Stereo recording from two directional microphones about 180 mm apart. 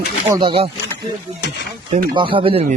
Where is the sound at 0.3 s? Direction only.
25° right (ahead or behind).